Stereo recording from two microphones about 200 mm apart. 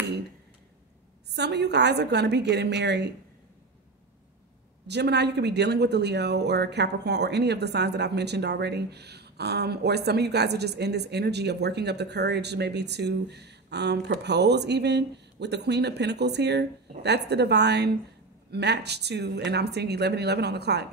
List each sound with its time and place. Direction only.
1.3 s speech: 55° right (ahead or behind)
4.8 s speech: 55° right (ahead or behind)